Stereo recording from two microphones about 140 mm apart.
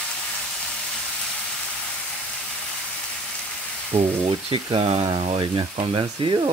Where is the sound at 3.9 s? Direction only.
55° right (ahead or behind).